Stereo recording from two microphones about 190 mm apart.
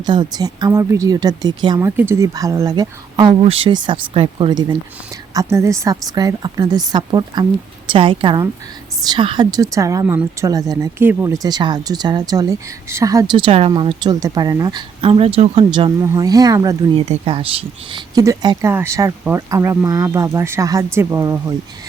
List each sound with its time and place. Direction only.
0.0 s speech: 25° right (ahead or behind)
17.1 s speech: 30° right (ahead or behind)